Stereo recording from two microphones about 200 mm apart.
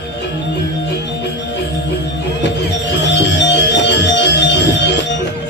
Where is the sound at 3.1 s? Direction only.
60° left (ahead or behind).